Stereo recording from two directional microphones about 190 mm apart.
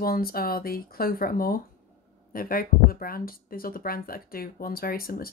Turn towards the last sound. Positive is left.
turn(degrees=50)  # may be behind; listen again after turning